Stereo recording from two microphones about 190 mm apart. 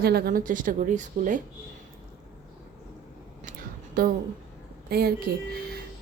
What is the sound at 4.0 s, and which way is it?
A woman's voice, 50° right (ahead or behind).